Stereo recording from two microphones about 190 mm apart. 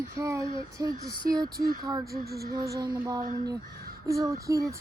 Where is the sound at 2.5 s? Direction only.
20° right (ahead or behind).